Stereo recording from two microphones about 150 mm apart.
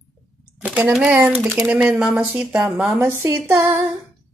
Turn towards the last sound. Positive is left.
turn(degrees=-15)  # may be behind; listen again after turning